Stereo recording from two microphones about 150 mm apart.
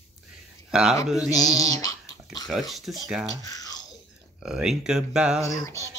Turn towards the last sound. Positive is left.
turn(degrees=20)  # may be behind; listen again after turning